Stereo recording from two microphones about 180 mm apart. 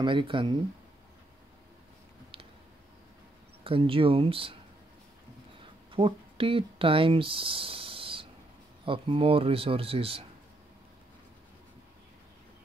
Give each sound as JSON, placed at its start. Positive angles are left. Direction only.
{"t": 0.0, "sound": "speech", "side_deg": -25}
{"t": 3.6, "sound": "speech", "side_deg": -30}
{"t": 5.9, "sound": "speech", "side_deg": -30}